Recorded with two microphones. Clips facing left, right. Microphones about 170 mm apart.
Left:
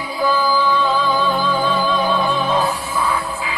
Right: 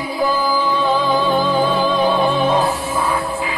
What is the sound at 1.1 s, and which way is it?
Music, 20° right (ahead or behind).